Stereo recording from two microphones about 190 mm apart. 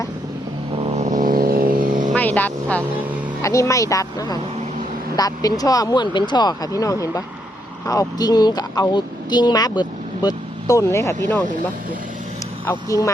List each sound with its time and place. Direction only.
0.8 s vehicle: 35° right (ahead or behind)
2.1 s vehicle: 10° left (ahead or behind)
3.4 s speech: 15° left (ahead or behind)
12.7 s speech: 15° left (ahead or behind)